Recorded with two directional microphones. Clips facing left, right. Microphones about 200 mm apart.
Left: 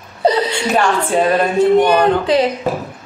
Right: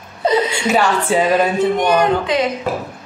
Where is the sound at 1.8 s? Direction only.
35° left (ahead or behind).